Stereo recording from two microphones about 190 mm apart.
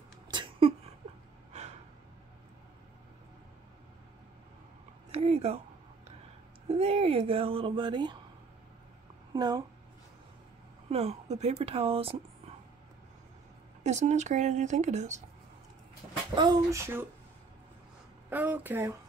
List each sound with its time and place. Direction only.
0.3 s a sound: 25° right (ahead or behind)
1.5 s gasp: 35° right (ahead or behind)
5.1 s a sound: 35° right (ahead or behind)
6.7 s speech: 30° right (ahead or behind)
9.3 s a woman's voice: 20° right (ahead or behind)
10.9 s speech: 35° right (ahead or behind)
13.8 s speech: 40° right (ahead or behind)
16.3 s speech: 20° right (ahead or behind)
18.3 s speech: 10° right (ahead or behind)